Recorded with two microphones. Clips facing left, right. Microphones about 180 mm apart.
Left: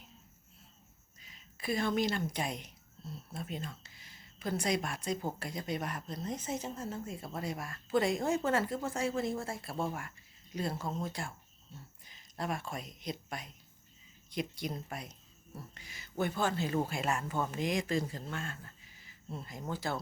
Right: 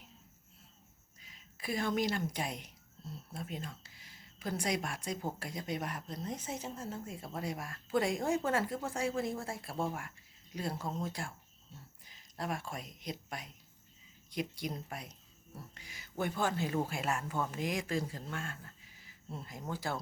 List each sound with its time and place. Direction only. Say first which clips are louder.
1.2 s speech: left 3 dB; 10° right (ahead or behind)
9.7 s speech: even; centre (ahead or behind)
12.4 s speech: left 1 dB; 10° right (ahead or behind)